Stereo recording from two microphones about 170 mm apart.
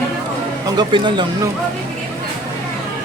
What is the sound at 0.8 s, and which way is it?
Speech, 30° right (ahead or behind).